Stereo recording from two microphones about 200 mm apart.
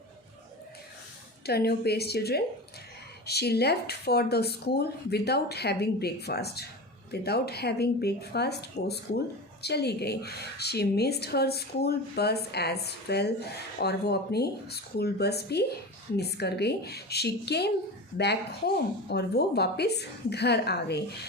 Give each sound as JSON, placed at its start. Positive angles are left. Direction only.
{"t": 1.5, "sound": "a woman's voice", "side_deg": 55}